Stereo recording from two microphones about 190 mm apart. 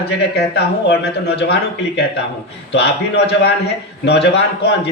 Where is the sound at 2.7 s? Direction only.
60° left (ahead or behind).